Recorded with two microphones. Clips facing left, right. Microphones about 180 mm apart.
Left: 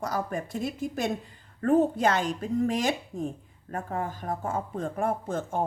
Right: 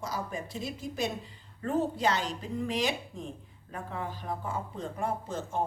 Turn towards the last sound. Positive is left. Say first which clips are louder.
# left 3 dB
turn(degrees=50)  # may be behind; listen again after turning